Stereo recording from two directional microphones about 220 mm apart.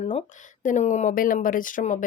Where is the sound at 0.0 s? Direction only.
30° left (ahead or behind).